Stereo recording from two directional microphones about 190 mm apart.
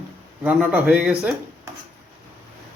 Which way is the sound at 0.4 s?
10° right (ahead or behind).